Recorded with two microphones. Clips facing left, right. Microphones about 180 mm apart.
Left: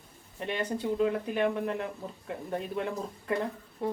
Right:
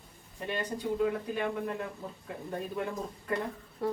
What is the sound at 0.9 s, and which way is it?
Speech, 20° left (ahead or behind).